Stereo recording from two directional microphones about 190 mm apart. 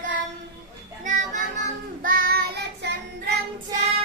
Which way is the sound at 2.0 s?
50° right (ahead or behind).